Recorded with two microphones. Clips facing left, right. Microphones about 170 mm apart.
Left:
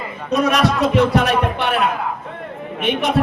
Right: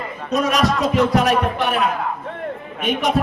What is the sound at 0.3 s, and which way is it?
Speech, 40° right (ahead or behind).